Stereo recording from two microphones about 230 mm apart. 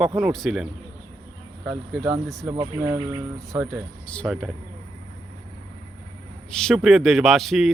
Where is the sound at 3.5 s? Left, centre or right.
Centre.